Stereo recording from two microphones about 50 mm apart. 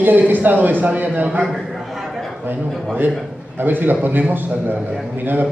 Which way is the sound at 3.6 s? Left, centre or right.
Right.